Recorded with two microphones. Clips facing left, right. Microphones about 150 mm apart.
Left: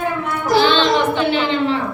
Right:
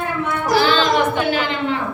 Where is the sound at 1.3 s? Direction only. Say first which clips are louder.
Left 3 dB; 30° left (ahead or behind).